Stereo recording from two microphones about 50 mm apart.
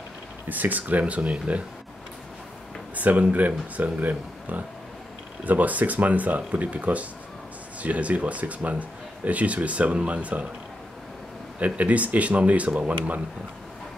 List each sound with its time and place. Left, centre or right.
0.5 s speech: right
3.0 s speech: right
11.6 s speech: right